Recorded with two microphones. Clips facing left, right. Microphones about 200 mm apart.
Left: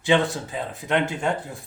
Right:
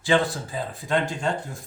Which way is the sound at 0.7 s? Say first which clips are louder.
Left 2 dB; 20° left (ahead or behind).